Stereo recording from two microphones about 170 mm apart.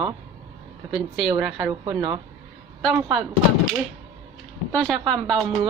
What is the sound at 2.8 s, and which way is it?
Speech, centre (ahead or behind).